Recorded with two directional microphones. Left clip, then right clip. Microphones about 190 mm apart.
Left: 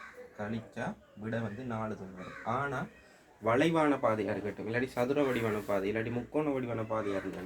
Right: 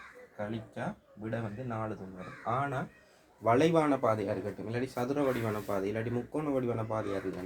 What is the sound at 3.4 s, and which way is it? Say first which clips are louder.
Speech: right 2 dB; 50° right (ahead or behind).